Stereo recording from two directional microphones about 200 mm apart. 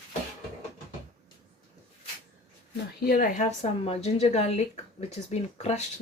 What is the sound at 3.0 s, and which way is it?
A woman's voice, 45° left (ahead or behind).